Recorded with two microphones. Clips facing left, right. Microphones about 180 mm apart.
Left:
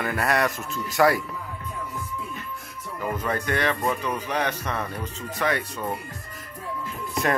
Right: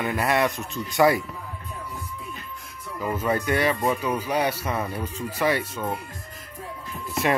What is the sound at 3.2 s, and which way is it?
Speech, 10° right (ahead or behind).